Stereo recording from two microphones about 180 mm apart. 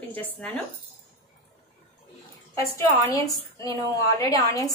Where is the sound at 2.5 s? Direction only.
15° left (ahead or behind).